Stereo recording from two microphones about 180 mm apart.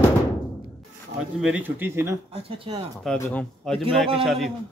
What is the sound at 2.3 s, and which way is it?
Speech, 30° right (ahead or behind).